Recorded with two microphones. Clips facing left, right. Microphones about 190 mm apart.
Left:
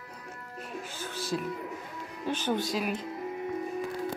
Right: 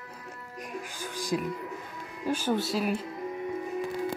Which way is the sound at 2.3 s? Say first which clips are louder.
Right 2 dB; 10° right (ahead or behind).